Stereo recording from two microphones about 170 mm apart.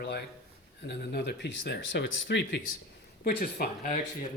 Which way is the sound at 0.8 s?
80° left.